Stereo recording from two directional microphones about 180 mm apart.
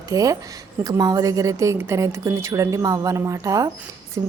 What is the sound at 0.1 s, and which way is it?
Speech, 20° right (ahead or behind).